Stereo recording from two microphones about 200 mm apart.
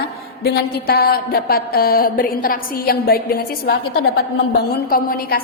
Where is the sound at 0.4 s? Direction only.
55° left (ahead or behind).